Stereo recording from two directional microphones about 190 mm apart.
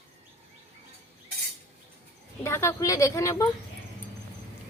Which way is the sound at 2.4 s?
15° left (ahead or behind).